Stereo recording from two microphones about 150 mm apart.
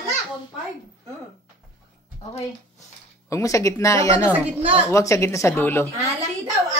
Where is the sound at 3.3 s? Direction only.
20° left (ahead or behind).